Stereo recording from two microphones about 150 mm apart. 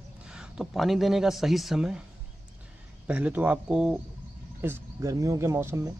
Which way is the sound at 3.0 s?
10° right (ahead or behind).